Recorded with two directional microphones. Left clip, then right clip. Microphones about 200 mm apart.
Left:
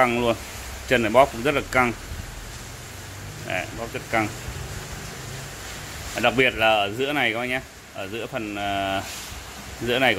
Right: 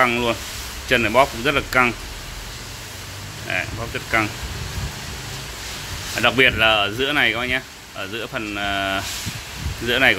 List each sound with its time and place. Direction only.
0.0 s speech: 10° left (ahead or behind)
3.4 s speech: 5° left (ahead or behind)
6.1 s speech: 5° left (ahead or behind)